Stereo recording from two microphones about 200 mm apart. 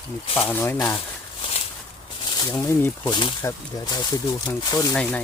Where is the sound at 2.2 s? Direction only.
20° left (ahead or behind).